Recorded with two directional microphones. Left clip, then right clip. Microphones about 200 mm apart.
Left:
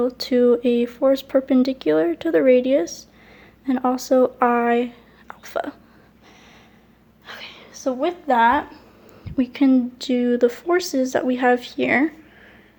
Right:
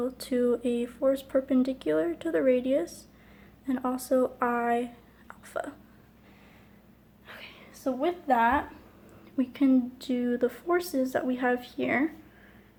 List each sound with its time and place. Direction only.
0.0 s speech: 40° left (ahead or behind)
7.3 s speech: 45° left (ahead or behind)